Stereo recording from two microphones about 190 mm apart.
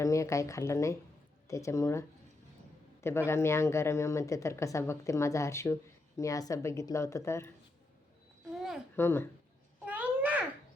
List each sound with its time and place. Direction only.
0.0 s speech: 15° left (ahead or behind)
8.5 s a sound: centre (ahead or behind)
9.0 s speech: 10° left (ahead or behind)
9.8 s babbling: 10° right (ahead or behind)